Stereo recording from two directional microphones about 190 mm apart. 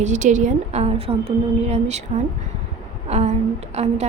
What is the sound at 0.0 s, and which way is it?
A woman's voice, 40° right (ahead or behind).